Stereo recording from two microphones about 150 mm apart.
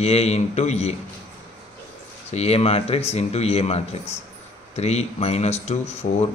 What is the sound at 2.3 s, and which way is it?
Speech, 45° left (ahead or behind).